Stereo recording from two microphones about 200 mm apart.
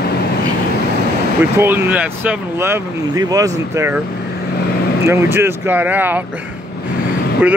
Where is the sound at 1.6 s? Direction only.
10° right (ahead or behind).